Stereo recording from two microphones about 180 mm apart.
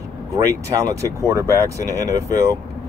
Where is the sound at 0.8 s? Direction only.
15° right (ahead or behind).